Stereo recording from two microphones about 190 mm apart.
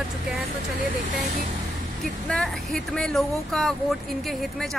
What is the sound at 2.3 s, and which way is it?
Speech, 5° left (ahead or behind).